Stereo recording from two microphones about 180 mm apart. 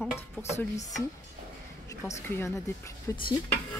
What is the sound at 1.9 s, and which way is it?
Speech, 15° left (ahead or behind).